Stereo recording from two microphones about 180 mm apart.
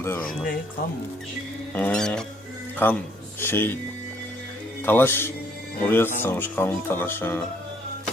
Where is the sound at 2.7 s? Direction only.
10° left (ahead or behind).